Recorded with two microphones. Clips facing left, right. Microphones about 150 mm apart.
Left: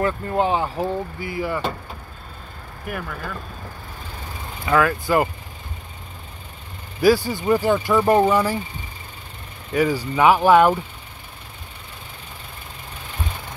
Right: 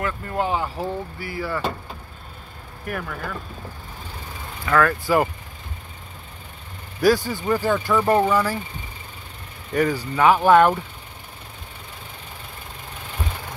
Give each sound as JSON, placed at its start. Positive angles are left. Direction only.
{"t": 0.0, "sound": "speech", "side_deg": 25}
{"t": 2.8, "sound": "speech", "side_deg": 0}
{"t": 4.6, "sound": "speech", "side_deg": 10}
{"t": 5.0, "sound": "speech", "side_deg": 0}
{"t": 7.0, "sound": "speech", "side_deg": 5}
{"t": 9.7, "sound": "speech", "side_deg": 5}